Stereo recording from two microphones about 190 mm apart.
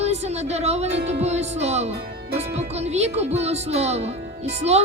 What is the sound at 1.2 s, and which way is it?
Music, 35° right (ahead or behind).